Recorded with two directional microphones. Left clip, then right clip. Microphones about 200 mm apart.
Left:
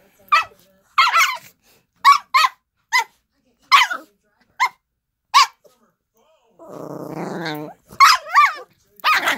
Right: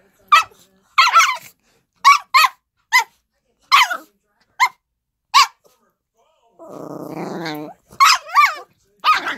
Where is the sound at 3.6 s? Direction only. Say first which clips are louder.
Even; 20° left (ahead or behind).